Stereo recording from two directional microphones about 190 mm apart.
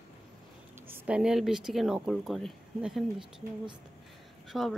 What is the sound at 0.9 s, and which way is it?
Speech, 5° right (ahead or behind).